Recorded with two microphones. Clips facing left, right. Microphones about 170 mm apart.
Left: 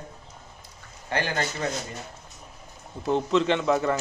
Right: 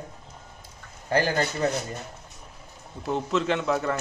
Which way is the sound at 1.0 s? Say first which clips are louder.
Right 4 dB; 40° right (ahead or behind).